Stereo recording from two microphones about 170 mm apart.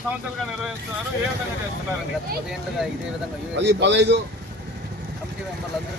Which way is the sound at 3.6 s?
90° right.